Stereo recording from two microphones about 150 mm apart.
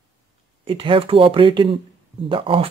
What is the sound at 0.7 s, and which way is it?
Speech, 35° right (ahead or behind).